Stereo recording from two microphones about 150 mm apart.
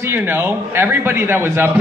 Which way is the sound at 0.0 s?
15° right (ahead or behind).